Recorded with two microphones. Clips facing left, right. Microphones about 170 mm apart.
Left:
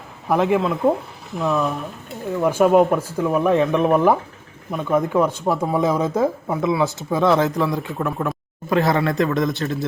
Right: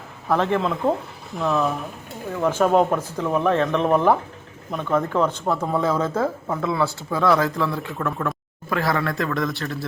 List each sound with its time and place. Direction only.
0.3 s a man's voice: 10° left (ahead or behind)